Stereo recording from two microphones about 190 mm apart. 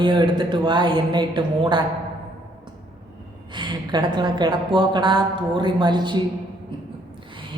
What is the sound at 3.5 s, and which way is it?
A man's voice, 25° right (ahead or behind).